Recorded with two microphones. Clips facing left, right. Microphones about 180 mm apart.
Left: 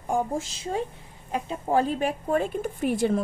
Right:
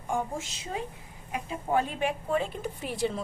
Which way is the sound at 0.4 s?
35° left (ahead or behind).